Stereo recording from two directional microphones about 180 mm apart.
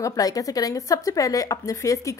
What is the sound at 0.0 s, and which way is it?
A woman's voice, 20° left (ahead or behind).